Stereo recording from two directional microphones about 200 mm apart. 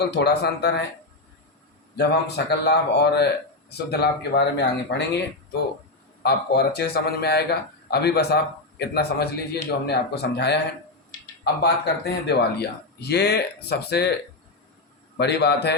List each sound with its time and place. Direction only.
0.1 s speech: 55° left (ahead or behind)
2.0 s speech: 55° left (ahead or behind)
11.6 s speech: 55° left (ahead or behind)
15.2 s speech: 55° left (ahead or behind)